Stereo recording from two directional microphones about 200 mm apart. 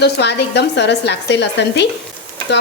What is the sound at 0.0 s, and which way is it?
A woman's voice, 60° left (ahead or behind).